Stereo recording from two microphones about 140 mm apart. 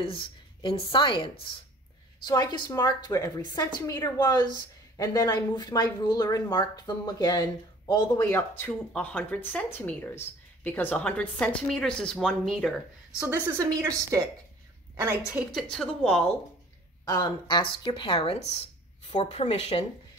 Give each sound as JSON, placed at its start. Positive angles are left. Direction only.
{"t": 0.0, "sound": "a woman's voice", "side_deg": 40}
{"t": 8.3, "sound": "speech", "side_deg": 15}
{"t": 13.2, "sound": "a woman's voice", "side_deg": -15}
{"t": 15.5, "sound": "a woman's voice", "side_deg": 0}
{"t": 17.0, "sound": "speech", "side_deg": 25}